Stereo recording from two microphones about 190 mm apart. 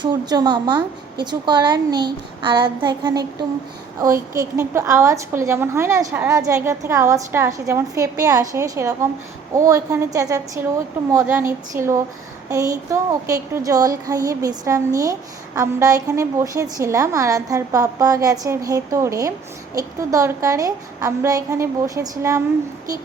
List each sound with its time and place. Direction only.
0.0 s a woman's voice: 20° right (ahead or behind)
11.7 s speech: 15° right (ahead or behind)